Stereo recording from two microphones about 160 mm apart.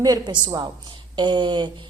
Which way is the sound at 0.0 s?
25° right (ahead or behind).